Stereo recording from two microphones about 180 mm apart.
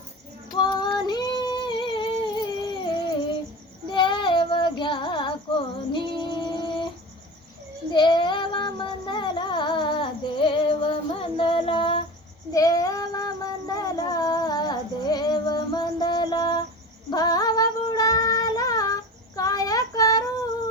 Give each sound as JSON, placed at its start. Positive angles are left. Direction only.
{"t": 0.5, "sound": "female singing", "side_deg": 25}
{"t": 3.9, "sound": "child singing", "side_deg": 25}
{"t": 5.7, "sound": "female singing", "side_deg": 25}
{"t": 7.9, "sound": "child singing", "side_deg": 25}
{"t": 17.1, "sound": "female singing", "side_deg": 20}
{"t": 19.4, "sound": "child singing", "side_deg": 20}